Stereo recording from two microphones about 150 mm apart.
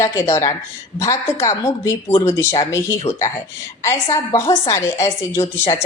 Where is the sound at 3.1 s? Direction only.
45° left (ahead or behind).